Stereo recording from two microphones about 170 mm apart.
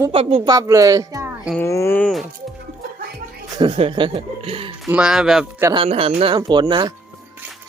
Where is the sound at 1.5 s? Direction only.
15° left (ahead or behind).